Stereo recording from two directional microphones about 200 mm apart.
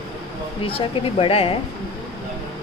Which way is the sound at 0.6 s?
30° left (ahead or behind).